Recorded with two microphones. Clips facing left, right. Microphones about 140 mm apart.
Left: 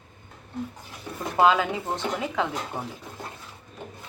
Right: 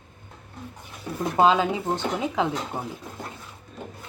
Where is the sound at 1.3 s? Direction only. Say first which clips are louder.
Right 1 dB; 25° right (ahead or behind).